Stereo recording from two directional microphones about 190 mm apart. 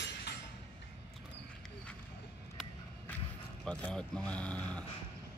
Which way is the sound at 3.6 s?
5° left (ahead or behind).